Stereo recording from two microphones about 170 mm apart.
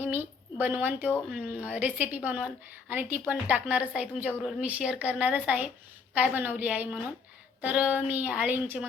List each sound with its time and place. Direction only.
0.0 s a sound: 10° right (ahead or behind)
0.9 s speech: 10° left (ahead or behind)
1.3 s speech: 10° right (ahead or behind)